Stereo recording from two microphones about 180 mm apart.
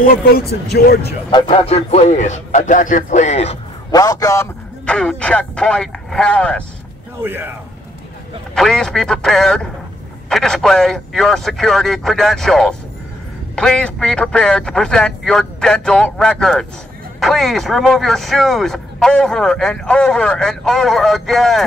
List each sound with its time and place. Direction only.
0.0 s speech: 55° left (ahead or behind)
1.0 s speech: 30° left (ahead or behind)
3.9 s a man's voice: 20° left (ahead or behind)
4.8 s speech: 5° left (ahead or behind)
7.2 s speech: 10° right (ahead or behind)
8.5 s speech: 5° left (ahead or behind)